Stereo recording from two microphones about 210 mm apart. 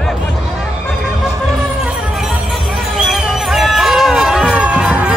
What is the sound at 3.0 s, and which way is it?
Music, centre (ahead or behind).